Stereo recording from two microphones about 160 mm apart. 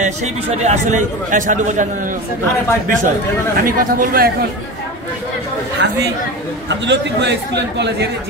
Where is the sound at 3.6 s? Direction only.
65° right (ahead or behind).